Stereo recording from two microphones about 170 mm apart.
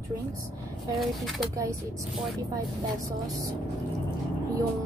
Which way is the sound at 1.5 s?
20° right (ahead or behind).